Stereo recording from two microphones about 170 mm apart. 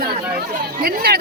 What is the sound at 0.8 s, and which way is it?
Speech, 65° right (ahead or behind).